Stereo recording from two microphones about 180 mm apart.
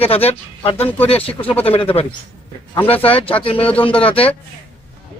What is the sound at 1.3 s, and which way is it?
Speech, 10° left (ahead or behind).